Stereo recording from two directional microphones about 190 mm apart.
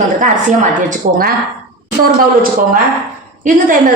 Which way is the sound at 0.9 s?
50° right (ahead or behind).